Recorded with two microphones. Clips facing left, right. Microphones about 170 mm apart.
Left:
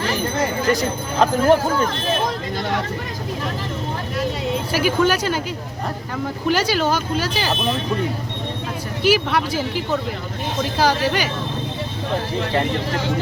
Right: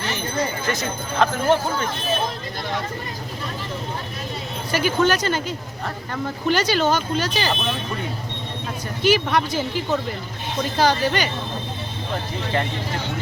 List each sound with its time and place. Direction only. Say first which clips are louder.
0.7 s speech: left 5 dB; 35° left (ahead or behind)
4.7 s speech: even; 10° left (ahead or behind)
6.5 s speech: even; 5° left (ahead or behind)
9.0 s speech: left 1 dB; 5° left (ahead or behind)